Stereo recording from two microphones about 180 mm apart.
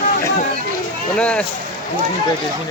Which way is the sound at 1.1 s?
5° left (ahead or behind).